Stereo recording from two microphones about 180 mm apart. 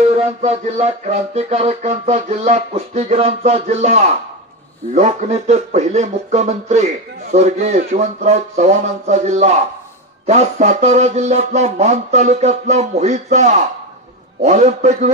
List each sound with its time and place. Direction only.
0.0 s speech: 35° right (ahead or behind)